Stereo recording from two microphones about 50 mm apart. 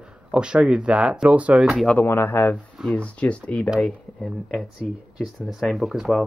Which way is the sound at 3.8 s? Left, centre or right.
Centre.